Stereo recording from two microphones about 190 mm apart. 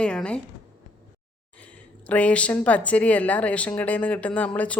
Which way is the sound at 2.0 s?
5° left (ahead or behind).